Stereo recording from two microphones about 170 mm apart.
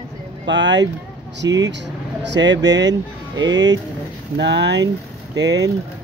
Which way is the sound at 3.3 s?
25° right (ahead or behind).